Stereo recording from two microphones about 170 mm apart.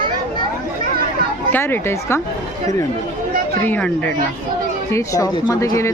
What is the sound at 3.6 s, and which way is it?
Speech, 10° left (ahead or behind).